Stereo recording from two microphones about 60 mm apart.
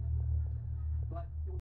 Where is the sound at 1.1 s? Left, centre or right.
Centre.